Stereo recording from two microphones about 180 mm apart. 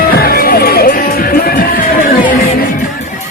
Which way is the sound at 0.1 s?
55° left (ahead or behind).